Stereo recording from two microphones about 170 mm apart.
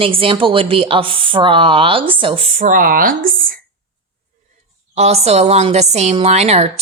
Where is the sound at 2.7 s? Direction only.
55° right (ahead or behind).